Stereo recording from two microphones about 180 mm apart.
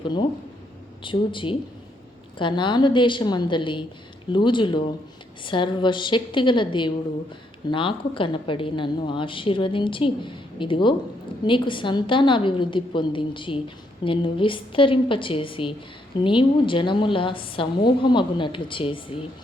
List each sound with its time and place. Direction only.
0.0 s a woman's voice: 25° left (ahead or behind)